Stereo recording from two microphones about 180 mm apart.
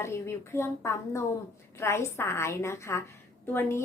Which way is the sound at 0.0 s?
15° left (ahead or behind).